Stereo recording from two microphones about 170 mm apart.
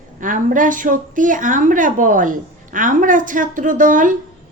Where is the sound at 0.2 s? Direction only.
50° right (ahead or behind).